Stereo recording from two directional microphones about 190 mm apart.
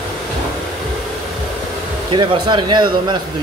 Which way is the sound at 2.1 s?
25° right (ahead or behind).